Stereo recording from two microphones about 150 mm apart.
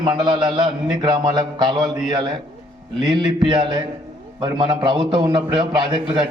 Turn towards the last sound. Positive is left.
turn(degrees=-30)  # may be behind; listen again after turning